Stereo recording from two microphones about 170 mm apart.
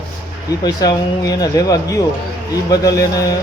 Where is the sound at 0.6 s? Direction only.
25° left (ahead or behind).